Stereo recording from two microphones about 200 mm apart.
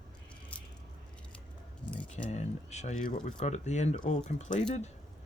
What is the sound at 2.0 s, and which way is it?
Speech, 35° left (ahead or behind).